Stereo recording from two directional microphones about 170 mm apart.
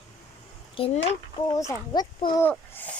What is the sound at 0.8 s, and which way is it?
Speech, 30° left (ahead or behind).